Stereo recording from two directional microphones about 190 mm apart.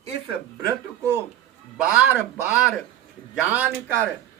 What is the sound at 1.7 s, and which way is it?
Speech, 5° right (ahead or behind).